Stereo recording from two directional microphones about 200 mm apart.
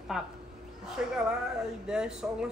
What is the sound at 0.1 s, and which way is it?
A woman's voice, centre (ahead or behind).